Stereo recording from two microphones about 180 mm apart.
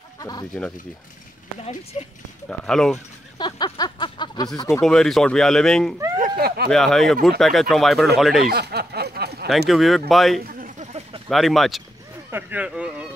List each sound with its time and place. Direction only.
0.2 s speech: 20° left (ahead or behind)
1.6 s speech: 35° left (ahead or behind)
2.6 s speech: 5° left (ahead or behind)
3.3 s a sound: 25° left (ahead or behind)
4.6 s speech: 15° left (ahead or behind)
4.8 s speech: centre (ahead or behind)
6.1 s a sound: 55° right (ahead or behind)
6.7 s speech: centre (ahead or behind)
8.5 s a sound: 65° right (ahead or behind)
9.7 s speech: centre (ahead or behind)
10.4 s a sound: 50° right (ahead or behind); by 11.2 s 35° right (ahead or behind)
11.2 s speech: centre (ahead or behind)
12.3 s speech: 10° right (ahead or behind)